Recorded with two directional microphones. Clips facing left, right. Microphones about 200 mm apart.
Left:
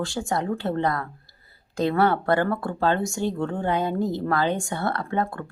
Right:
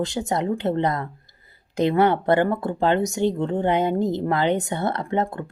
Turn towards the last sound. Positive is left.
turn(degrees=-20)  # may be behind; listen again after turning